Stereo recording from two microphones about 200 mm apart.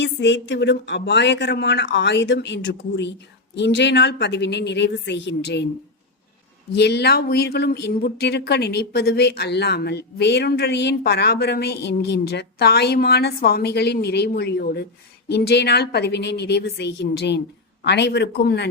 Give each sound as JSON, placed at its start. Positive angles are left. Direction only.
{"t": 0.0, "sound": "speech", "side_deg": 65}
{"t": 6.7, "sound": "speech", "side_deg": 55}